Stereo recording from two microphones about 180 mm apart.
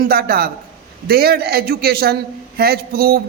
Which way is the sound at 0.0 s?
55° right (ahead or behind).